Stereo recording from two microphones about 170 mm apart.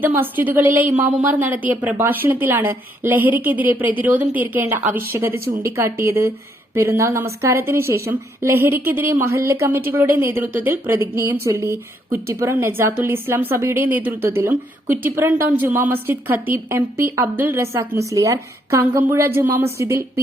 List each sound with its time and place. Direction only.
0.0 s a woman's voice: 10° right (ahead or behind)